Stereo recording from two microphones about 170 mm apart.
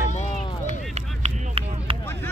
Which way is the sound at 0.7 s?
40° right (ahead or behind).